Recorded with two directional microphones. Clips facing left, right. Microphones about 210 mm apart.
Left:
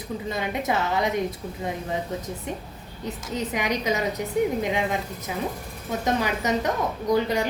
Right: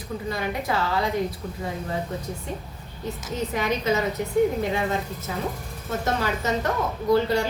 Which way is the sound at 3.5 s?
15° left (ahead or behind).